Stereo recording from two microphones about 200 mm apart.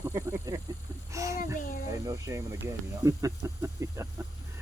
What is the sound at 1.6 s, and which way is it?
Speech, 45° left (ahead or behind).